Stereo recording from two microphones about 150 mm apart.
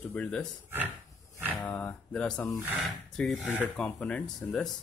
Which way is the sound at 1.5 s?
10° left (ahead or behind).